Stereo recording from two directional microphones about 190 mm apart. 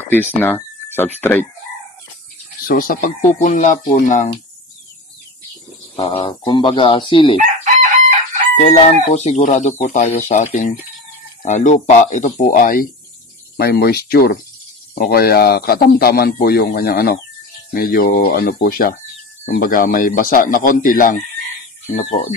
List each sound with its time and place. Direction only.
0.3 s speech: 10° left (ahead or behind)
2.6 s a man's voice: 50° left (ahead or behind)
5.9 s speech: 30° left (ahead or behind)
7.3 s chicken: 40° right (ahead or behind)
8.5 s a man's voice: 35° left (ahead or behind)